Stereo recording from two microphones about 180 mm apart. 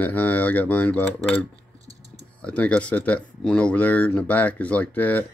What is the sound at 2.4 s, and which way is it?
Speech, 5° left (ahead or behind).